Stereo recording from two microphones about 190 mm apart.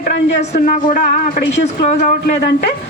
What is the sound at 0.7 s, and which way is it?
Speech, 40° left (ahead or behind).